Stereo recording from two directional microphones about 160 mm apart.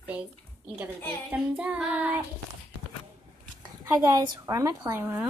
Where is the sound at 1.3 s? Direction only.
10° right (ahead or behind).